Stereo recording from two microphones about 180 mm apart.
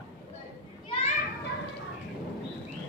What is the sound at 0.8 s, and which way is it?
Children playing, 35° left (ahead or behind).